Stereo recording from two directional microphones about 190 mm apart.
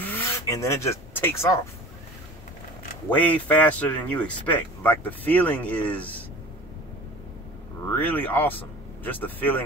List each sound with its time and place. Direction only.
0.0 s wood: 10° left (ahead or behind)
3.2 s speech: 10° left (ahead or behind)
7.9 s speech: 10° left (ahead or behind)